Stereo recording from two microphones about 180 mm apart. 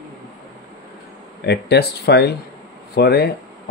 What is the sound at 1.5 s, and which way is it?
Speech, 65° left (ahead or behind).